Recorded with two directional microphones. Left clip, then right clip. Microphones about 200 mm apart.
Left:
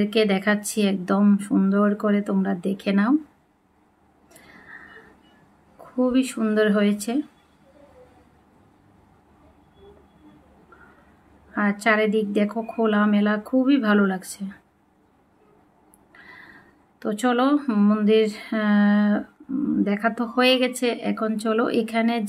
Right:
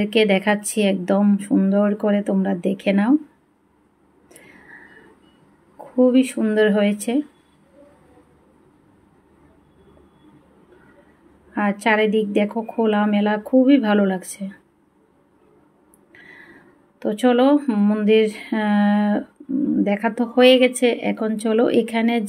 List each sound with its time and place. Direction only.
0.0 s speech: 5° right (ahead or behind)
5.9 s speech: 5° right (ahead or behind)
11.5 s speech: 5° right (ahead or behind)
16.1 s a sound: 5° right (ahead or behind)
17.0 s speech: 5° right (ahead or behind)